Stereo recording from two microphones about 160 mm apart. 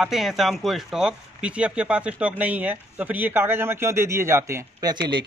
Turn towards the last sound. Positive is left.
turn(degrees=-25)  # may be behind; listen again after turning